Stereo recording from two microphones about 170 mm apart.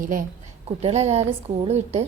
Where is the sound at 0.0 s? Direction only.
55° right (ahead or behind).